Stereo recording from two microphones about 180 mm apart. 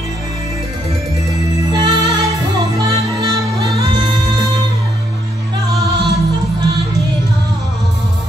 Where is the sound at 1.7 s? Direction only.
20° right (ahead or behind).